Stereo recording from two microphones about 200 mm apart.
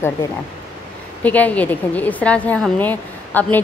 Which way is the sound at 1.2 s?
10° left (ahead or behind).